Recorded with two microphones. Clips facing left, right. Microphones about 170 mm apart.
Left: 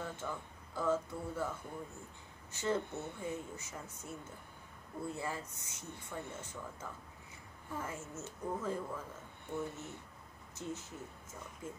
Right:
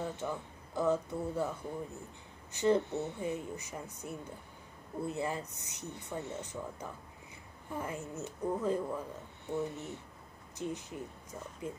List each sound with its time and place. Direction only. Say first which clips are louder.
0.0 s speech: right 5 dB; 20° right (ahead or behind)
2.5 s speech: right 7 dB; 15° right (ahead or behind)